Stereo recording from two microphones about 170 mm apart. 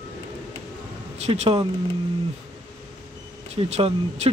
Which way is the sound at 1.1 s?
40° right (ahead or behind).